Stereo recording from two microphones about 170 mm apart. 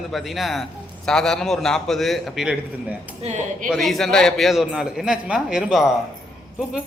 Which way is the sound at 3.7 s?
Centre (ahead or behind).